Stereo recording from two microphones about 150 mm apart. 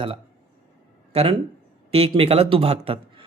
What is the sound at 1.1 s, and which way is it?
Speech, 40° right (ahead or behind).